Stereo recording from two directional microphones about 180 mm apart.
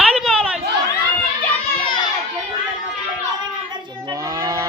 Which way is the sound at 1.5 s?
25° left (ahead or behind).